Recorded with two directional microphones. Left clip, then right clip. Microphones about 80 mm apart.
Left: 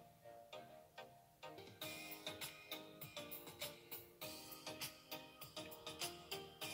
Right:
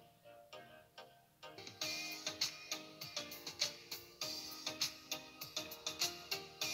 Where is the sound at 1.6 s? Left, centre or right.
Right.